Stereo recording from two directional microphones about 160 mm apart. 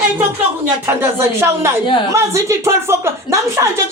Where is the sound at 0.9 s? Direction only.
15° right (ahead or behind).